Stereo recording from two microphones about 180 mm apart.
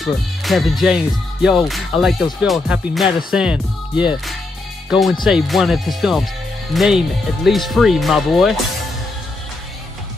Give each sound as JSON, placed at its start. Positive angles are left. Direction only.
{"t": 0.0, "sound": "speech", "side_deg": 0}
{"t": 5.2, "sound": "speech", "side_deg": 0}